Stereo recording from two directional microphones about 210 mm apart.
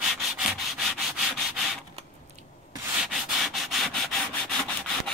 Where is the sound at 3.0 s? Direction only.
Centre (ahead or behind).